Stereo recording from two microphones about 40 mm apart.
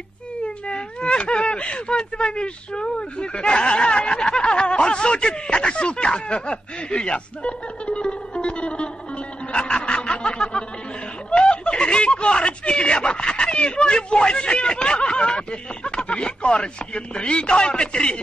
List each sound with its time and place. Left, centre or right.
0.4 s speech: left
9.5 s snicker: left
11.2 s speech: left